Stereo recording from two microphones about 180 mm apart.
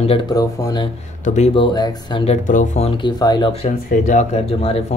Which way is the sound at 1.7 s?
20° left (ahead or behind).